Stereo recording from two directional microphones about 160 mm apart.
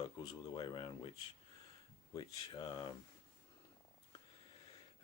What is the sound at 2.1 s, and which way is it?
Speech, 25° left (ahead or behind).